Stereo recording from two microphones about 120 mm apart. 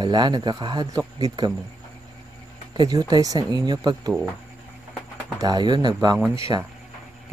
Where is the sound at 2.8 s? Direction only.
35° right (ahead or behind).